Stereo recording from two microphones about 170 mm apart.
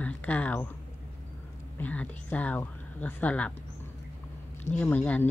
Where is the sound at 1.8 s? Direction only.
10° left (ahead or behind).